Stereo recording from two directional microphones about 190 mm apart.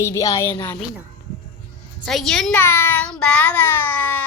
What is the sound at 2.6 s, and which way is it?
A woman's voice, 10° left (ahead or behind).